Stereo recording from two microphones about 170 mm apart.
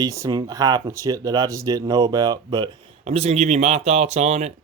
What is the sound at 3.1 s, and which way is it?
Speech, 40° right (ahead or behind).